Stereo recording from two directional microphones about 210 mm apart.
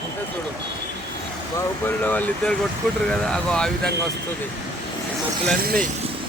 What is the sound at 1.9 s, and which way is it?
Speech, 10° left (ahead or behind).